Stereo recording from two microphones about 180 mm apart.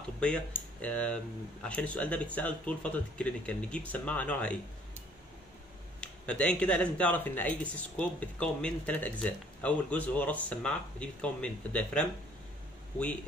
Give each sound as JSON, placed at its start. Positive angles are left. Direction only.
{"t": 0.2, "sound": "speech", "side_deg": 5}
{"t": 6.2, "sound": "speech", "side_deg": 5}